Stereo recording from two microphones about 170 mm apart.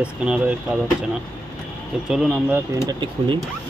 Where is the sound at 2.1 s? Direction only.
5° right (ahead or behind).